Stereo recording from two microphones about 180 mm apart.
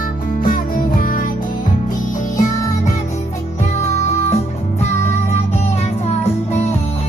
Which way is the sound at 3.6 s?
40° left (ahead or behind).